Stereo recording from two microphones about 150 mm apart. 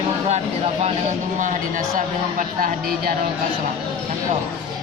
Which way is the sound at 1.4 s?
60° right (ahead or behind).